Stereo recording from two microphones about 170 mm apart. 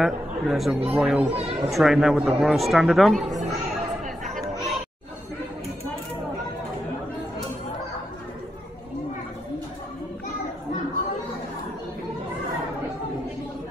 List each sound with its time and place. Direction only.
0.0 s speech: centre (ahead or behind)
1.3 s speech: 35° right (ahead or behind)
1.7 s speech: centre (ahead or behind)